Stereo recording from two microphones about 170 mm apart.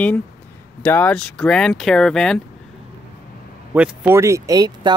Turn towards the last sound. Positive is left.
turn(degrees=-20)  # may be behind; listen again after turning